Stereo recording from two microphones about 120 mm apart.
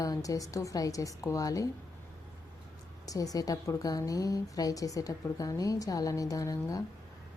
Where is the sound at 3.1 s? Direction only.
30° left (ahead or behind).